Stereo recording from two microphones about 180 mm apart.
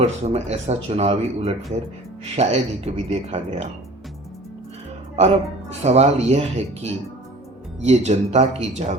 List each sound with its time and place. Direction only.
0.0 s speech: 35° right (ahead or behind)
5.8 s speech: 35° right (ahead or behind)